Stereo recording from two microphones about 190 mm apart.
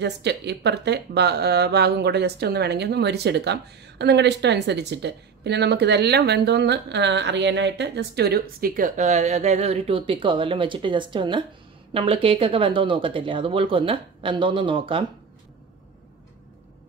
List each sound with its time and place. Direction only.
0.0 s a woman's voice: 65° right (ahead or behind); by 15.0 s 25° right (ahead or behind)